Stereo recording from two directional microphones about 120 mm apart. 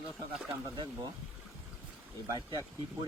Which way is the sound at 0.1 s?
5° right (ahead or behind).